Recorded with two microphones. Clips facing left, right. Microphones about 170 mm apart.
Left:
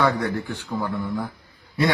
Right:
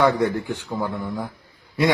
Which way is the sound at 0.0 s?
15° right (ahead or behind).